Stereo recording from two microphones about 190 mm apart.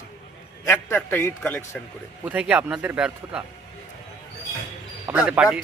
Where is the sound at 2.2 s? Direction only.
10° right (ahead or behind).